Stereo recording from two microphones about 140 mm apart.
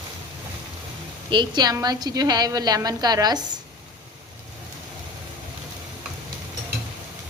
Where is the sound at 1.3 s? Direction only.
30° right (ahead or behind).